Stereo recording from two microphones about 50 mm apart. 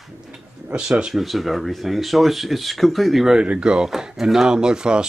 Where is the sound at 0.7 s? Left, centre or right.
Centre.